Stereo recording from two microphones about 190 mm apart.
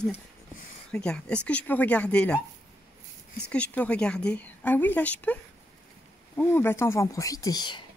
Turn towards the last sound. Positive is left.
turn(degrees=20)  # may be behind; listen again after turning